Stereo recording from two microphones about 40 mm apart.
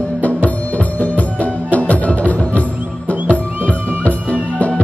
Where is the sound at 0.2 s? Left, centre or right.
Left.